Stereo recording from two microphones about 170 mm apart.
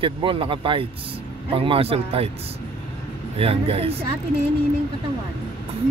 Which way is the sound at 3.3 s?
35° right (ahead or behind).